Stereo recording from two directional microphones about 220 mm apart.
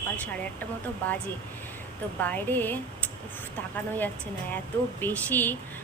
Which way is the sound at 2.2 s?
10° left (ahead or behind).